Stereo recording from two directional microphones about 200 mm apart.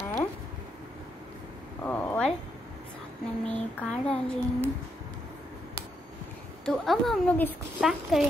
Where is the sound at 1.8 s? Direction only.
10° left (ahead or behind).